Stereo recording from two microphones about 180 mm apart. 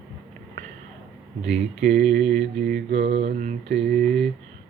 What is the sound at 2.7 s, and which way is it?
Mantra, 80° right.